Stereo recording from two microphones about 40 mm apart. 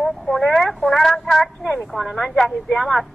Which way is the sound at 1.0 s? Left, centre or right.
Centre.